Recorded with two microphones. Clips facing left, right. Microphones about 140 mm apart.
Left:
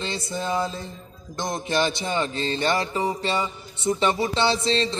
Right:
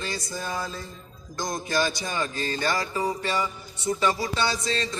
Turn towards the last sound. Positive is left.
turn(degrees=25)  # may be behind; listen again after turning